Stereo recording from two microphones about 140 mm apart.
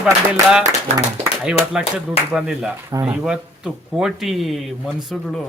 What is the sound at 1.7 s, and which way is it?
Speech, 5° right (ahead or behind).